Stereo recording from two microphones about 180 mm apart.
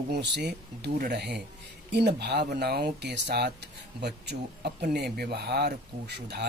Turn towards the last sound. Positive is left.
turn(degrees=-70)  # may be behind; listen again after turning